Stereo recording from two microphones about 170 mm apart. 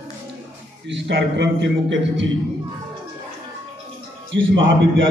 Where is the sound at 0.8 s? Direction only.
85° right.